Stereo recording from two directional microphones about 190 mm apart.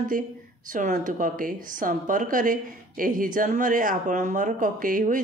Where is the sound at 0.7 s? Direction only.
45° right (ahead or behind).